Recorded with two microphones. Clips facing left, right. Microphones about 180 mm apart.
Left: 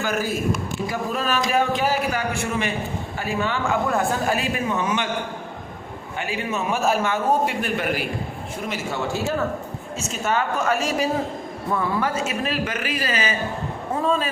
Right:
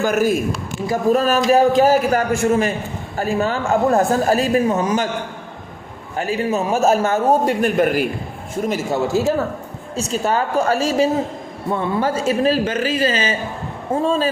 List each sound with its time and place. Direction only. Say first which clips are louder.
0.5 s a man's voice: right 4 dB; 40° right (ahead or behind)
6.1 s a man's voice: right 7 dB; 40° right (ahead or behind)